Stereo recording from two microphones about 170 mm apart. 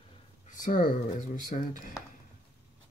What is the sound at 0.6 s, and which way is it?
Speech, 50° left (ahead or behind).